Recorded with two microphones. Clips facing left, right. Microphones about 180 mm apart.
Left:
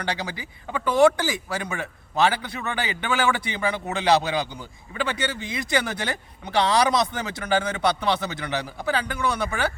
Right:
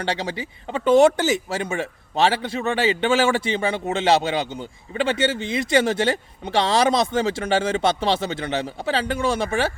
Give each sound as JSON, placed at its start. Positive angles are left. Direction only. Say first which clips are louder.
{"t": 0.0, "sound": "speech", "louder": "right 4 dB", "side_deg": -25}